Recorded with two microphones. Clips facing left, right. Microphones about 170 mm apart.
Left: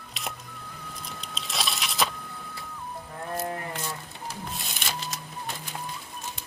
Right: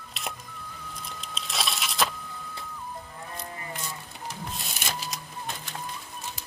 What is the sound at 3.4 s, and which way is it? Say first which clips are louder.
Livestock: left 8 dB; 60° left (ahead or behind).